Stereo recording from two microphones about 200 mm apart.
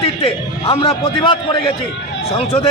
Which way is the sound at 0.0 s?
30° left (ahead or behind).